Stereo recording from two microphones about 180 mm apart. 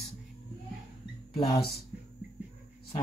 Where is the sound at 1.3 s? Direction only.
25° left (ahead or behind).